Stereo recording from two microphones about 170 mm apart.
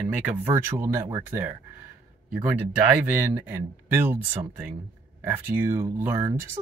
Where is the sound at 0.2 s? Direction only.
15° right (ahead or behind).